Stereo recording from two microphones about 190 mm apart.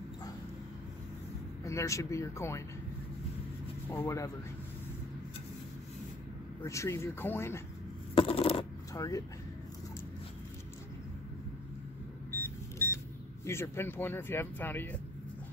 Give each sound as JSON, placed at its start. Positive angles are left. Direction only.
{"t": 1.6, "sound": "speech", "side_deg": 15}
{"t": 3.9, "sound": "speech", "side_deg": 15}
{"t": 6.6, "sound": "speech", "side_deg": 15}
{"t": 8.1, "sound": "shuffling cards", "side_deg": 30}
{"t": 8.9, "sound": "speech", "side_deg": 20}
{"t": 12.3, "sound": "vehicle", "side_deg": 10}
{"t": 13.5, "sound": "speech", "side_deg": 10}